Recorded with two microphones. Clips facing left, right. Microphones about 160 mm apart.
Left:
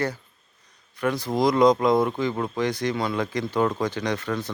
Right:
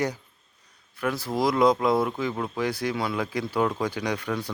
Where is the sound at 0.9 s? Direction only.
5° right (ahead or behind).